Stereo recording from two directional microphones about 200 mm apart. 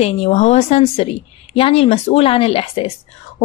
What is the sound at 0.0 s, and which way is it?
A woman's voice, 30° left (ahead or behind).